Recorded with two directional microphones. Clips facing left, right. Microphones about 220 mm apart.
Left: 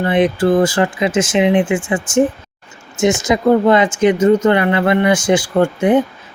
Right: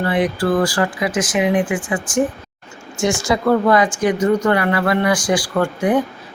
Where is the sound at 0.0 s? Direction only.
20° left (ahead or behind).